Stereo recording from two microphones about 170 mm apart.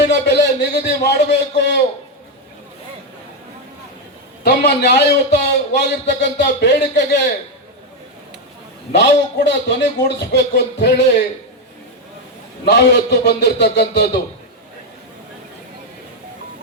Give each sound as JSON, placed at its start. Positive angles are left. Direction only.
{"t": 0.0, "sound": "a sound", "side_deg": 85}
{"t": 4.4, "sound": "a man's voice", "side_deg": 80}
{"t": 8.9, "sound": "a man's voice", "side_deg": 90}
{"t": 12.6, "sound": "a man's voice", "side_deg": 85}